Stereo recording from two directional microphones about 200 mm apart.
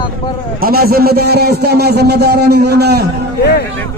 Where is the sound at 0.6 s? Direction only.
50° right (ahead or behind).